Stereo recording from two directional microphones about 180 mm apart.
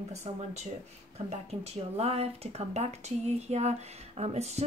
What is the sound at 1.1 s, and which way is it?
Speech, 35° right (ahead or behind).